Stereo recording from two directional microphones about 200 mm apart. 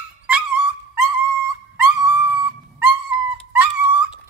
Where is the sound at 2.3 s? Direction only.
5° right (ahead or behind).